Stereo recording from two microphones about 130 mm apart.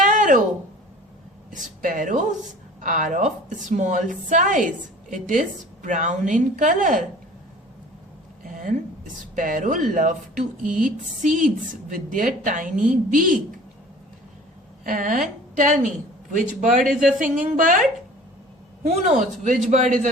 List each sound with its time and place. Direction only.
0.1 s a sound: 90° right
1.5 s a woman's voice: 90° right; by 4.0 s 70° right (ahead or behind)
4.3 s a woman's voice: 80° right
8.4 s a sound: 90° right
9.3 s speech: 90° right
14.8 s a woman's voice: 90° right
16.3 s speech: 90° right
18.8 s a woman's voice: 70° right (ahead or behind)